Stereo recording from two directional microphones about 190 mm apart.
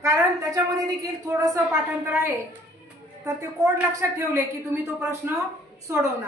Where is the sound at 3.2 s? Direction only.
15° right (ahead or behind).